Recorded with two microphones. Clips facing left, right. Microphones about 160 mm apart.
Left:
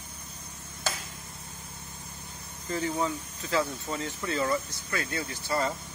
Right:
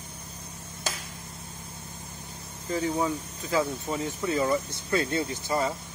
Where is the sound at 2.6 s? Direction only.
5° right (ahead or behind).